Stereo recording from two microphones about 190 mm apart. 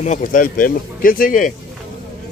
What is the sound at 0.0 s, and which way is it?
Speech, 40° left (ahead or behind).